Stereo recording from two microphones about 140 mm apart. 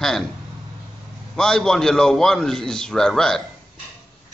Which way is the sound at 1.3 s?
5° left (ahead or behind).